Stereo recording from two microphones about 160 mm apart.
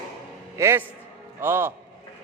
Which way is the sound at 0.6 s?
15° right (ahead or behind).